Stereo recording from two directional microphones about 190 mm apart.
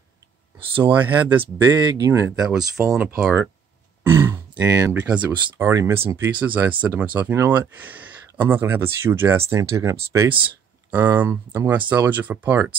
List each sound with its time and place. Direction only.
0.6 s speech: 30° right (ahead or behind)
0.9 s speech: 10° right (ahead or behind)
1.4 s speech: 20° right (ahead or behind)
2.5 s speech: centre (ahead or behind)